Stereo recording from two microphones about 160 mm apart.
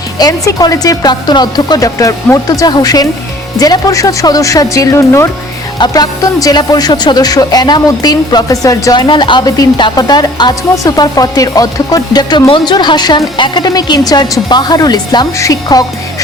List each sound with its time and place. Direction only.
0.2 s speech: 25° left (ahead or behind)